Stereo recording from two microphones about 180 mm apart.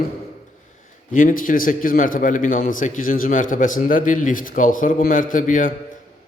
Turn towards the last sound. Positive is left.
turn(degrees=50)  # may be behind; listen again after turning